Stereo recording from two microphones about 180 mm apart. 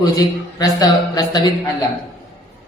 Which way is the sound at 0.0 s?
20° left (ahead or behind).